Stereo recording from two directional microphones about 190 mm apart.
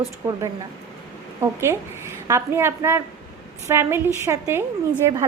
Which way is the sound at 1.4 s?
15° right (ahead or behind).